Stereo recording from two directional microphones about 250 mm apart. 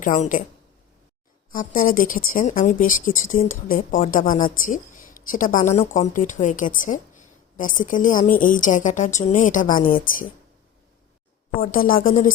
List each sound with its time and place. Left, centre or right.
0.0 s speech: left
1.5 s speech: left
11.6 s speech: left